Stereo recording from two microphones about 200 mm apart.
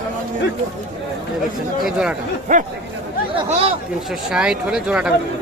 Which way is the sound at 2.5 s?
40° right (ahead or behind).